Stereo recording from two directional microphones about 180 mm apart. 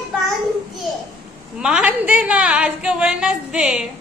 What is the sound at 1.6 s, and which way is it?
A woman's voice, 5° right (ahead or behind).